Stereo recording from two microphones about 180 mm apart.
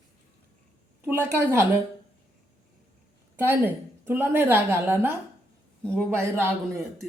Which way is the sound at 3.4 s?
10° right (ahead or behind).